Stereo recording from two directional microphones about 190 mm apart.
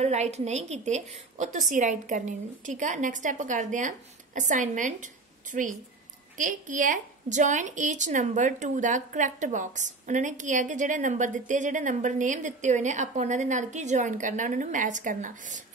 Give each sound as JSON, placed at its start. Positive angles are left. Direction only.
{"t": 0.0, "sound": "a woman's voice", "side_deg": -35}